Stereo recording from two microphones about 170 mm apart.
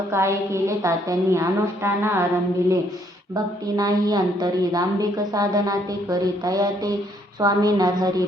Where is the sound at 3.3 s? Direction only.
20° right (ahead or behind).